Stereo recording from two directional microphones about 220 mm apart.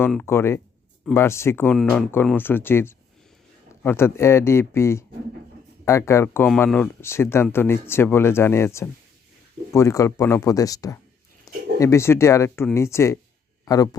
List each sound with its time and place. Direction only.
0.0 s speech: 10° left (ahead or behind)